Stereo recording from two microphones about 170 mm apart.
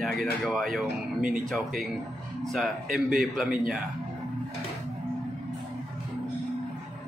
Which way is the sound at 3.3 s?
Centre (ahead or behind).